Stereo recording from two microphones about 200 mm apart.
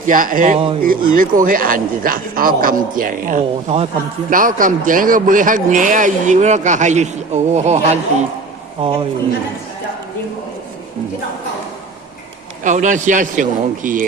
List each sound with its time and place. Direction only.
0.0 s a man's voice: 45° right (ahead or behind); by 9.0 s 25° right (ahead or behind)
12.6 s a man's voice: 40° right (ahead or behind)